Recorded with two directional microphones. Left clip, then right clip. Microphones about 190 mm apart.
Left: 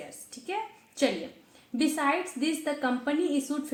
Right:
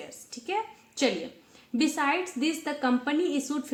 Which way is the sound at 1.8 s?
25° right (ahead or behind).